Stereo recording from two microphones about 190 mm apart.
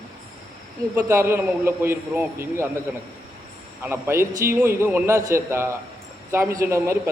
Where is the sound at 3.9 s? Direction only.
15° right (ahead or behind).